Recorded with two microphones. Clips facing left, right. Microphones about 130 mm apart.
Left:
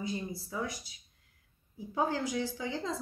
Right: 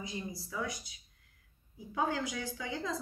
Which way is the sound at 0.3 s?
30° left (ahead or behind).